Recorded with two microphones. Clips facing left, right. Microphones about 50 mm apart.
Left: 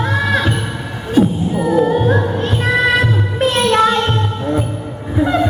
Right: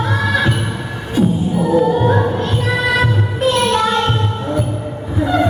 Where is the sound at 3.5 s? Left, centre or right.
Left.